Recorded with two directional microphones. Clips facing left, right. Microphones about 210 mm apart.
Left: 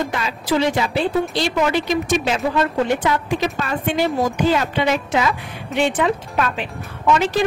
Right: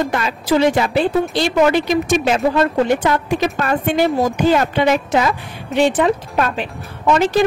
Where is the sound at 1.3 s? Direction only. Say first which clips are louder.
Right 5 dB; 50° right (ahead or behind).